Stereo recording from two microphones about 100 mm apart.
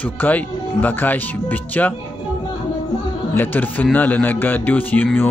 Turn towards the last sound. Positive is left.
turn(degrees=15)  # may be behind; listen again after turning